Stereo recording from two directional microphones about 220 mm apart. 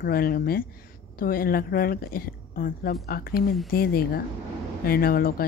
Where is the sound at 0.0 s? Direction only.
40° left (ahead or behind).